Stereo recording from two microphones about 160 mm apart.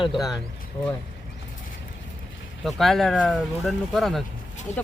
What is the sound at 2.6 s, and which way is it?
Speech, centre (ahead or behind).